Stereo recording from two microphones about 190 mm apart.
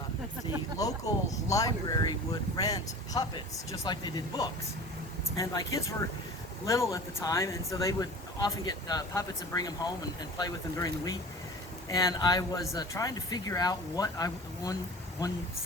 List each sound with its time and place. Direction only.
0.8 s speech: 20° left (ahead or behind)